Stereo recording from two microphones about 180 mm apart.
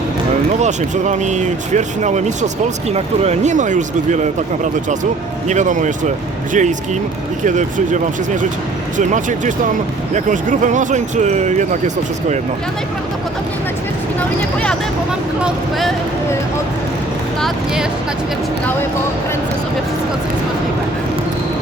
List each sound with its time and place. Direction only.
0.6 s speech: 40° right (ahead or behind)